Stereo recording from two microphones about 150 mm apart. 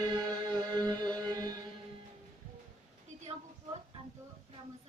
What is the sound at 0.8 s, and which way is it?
Music, 30° right (ahead or behind).